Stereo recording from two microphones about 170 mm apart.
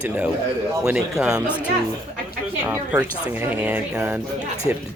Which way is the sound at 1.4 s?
10° left (ahead or behind).